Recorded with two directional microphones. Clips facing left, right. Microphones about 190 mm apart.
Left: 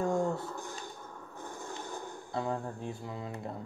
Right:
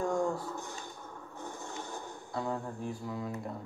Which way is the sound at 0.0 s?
25° left (ahead or behind).